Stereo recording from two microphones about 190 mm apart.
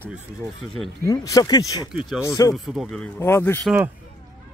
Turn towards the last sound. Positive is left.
turn(degrees=10)  # may be behind; listen again after turning